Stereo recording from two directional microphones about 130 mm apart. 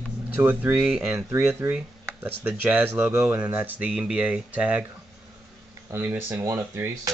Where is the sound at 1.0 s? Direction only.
20° right (ahead or behind).